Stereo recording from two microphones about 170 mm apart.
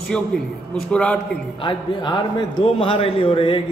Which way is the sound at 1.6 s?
25° left (ahead or behind).